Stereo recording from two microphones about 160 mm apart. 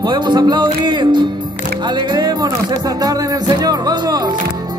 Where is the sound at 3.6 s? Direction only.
25° right (ahead or behind).